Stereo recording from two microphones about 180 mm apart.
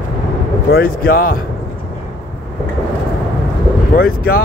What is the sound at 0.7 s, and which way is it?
Speech, 55° left (ahead or behind).